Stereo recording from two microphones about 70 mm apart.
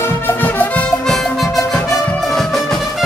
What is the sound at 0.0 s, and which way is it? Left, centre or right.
Music, left.